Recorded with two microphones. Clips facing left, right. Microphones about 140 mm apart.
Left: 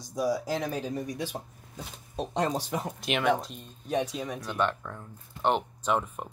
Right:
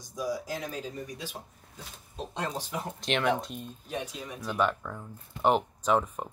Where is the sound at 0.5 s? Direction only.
75° left (ahead or behind).